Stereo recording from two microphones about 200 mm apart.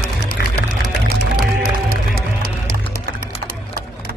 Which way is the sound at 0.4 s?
55° left (ahead or behind).